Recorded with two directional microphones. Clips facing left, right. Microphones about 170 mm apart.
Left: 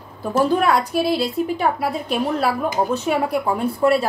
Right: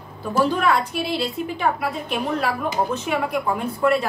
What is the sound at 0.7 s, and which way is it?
A woman's voice, 40° left (ahead or behind).